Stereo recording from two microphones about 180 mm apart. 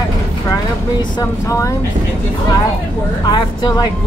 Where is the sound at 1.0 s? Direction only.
20° left (ahead or behind).